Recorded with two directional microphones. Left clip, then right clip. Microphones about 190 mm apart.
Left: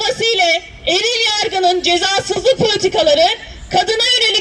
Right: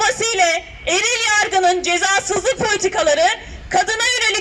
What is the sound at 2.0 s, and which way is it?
Speech, 25° left (ahead or behind).